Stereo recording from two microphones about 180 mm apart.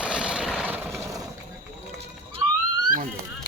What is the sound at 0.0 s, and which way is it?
Vehicle, 5° right (ahead or behind).